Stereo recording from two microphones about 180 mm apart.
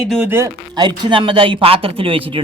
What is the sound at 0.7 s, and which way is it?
Speech, 25° right (ahead or behind).